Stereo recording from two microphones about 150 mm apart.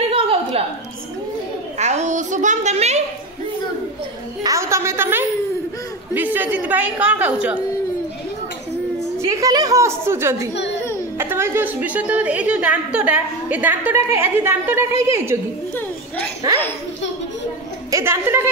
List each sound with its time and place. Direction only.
0.1 s a sound: 40° right (ahead or behind)
1.8 s a child's voice: 50° right (ahead or behind)
4.4 s a woman's voice: 20° right (ahead or behind)
9.2 s a woman's voice: 20° right (ahead or behind)
17.9 s a woman's voice: 15° right (ahead or behind)